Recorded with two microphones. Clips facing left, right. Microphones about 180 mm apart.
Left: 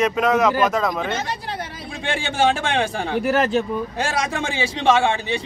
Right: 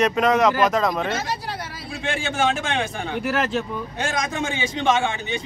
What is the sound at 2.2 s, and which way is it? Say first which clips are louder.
Speech: left 4 dB; 35° left (ahead or behind).